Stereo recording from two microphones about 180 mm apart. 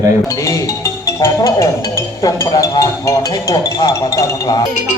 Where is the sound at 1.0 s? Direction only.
15° left (ahead or behind).